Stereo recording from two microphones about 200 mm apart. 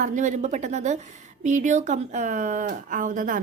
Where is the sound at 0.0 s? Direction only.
40° right (ahead or behind).